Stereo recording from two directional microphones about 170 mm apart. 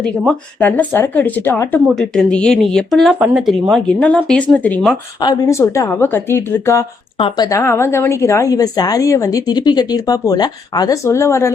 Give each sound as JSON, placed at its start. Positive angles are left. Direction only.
{"t": 0.0, "sound": "speech", "side_deg": 5}
{"t": 2.0, "sound": "speech", "side_deg": 5}
{"t": 5.2, "sound": "speech", "side_deg": 20}
{"t": 7.2, "sound": "speech", "side_deg": 30}